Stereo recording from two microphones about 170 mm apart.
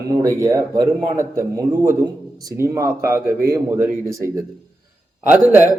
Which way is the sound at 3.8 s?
55° right (ahead or behind).